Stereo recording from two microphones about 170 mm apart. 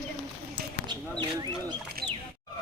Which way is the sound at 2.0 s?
60° right (ahead or behind).